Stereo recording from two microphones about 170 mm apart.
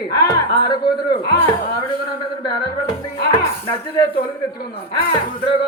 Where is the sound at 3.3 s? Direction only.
15° left (ahead or behind).